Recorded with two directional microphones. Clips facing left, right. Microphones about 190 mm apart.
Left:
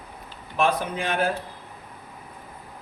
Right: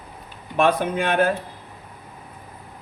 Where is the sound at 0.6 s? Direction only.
60° right (ahead or behind).